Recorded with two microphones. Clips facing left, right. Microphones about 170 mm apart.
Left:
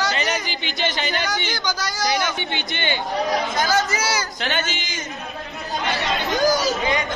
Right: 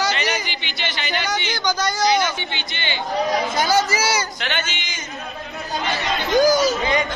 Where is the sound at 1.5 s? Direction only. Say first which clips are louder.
Right 4 dB; centre (ahead or behind).